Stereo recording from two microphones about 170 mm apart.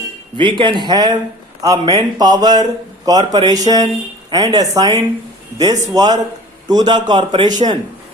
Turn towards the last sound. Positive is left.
turn(degrees=-25)  # may be behind; listen again after turning